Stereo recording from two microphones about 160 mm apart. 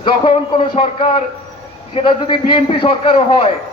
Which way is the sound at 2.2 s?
30° left (ahead or behind).